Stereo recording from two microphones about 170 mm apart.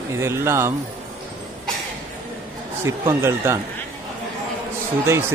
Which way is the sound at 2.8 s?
15° right (ahead or behind).